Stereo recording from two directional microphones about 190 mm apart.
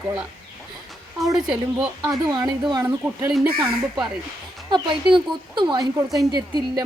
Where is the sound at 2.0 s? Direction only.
20° right (ahead or behind).